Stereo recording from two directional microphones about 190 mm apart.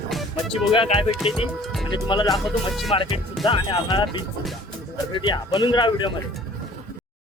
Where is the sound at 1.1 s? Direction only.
5° right (ahead or behind).